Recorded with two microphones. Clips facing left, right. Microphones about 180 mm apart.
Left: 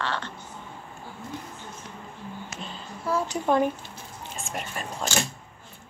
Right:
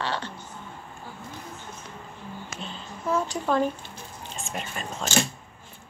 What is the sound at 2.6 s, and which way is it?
Music, 5° left (ahead or behind).